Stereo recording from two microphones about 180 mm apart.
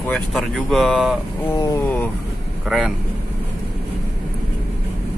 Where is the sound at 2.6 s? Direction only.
5° right (ahead or behind).